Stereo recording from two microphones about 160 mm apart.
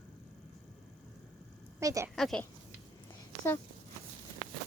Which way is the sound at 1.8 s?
20° right (ahead or behind).